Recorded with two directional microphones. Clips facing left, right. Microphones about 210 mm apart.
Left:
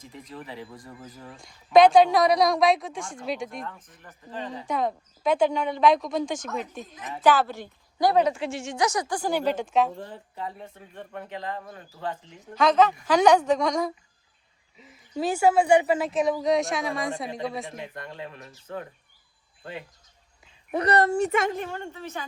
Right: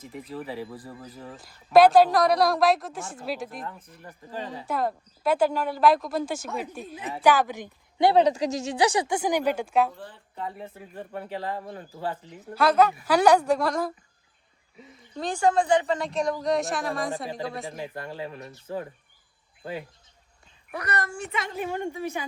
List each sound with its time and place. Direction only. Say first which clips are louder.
0.0 s a woman's voice: right 5 dB; 5° right (ahead or behind)
0.4 s speech: right 5 dB; 30° right (ahead or behind)
1.4 s a woman's voice: even; 5° right (ahead or behind)
15.1 s a woman's voice: left 2 dB; 5° left (ahead or behind)
17.7 s speech: right 3 dB; 30° right (ahead or behind)
20.7 s a woman's voice: left 9 dB; 30° left (ahead or behind); by 21.5 s 45° left (ahead or behind)
21.5 s a woman's voice: right 3 dB; 10° right (ahead or behind)